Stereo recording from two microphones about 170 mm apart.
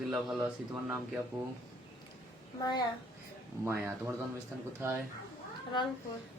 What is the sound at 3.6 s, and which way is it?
Speech, 15° right (ahead or behind).